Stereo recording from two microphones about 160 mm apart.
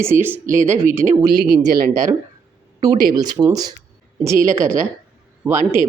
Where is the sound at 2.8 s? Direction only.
25° right (ahead or behind).